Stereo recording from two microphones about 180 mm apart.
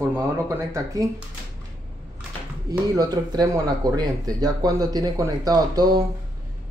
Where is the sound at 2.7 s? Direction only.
20° right (ahead or behind).